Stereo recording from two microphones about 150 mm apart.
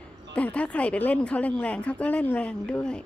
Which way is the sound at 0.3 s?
10° left (ahead or behind).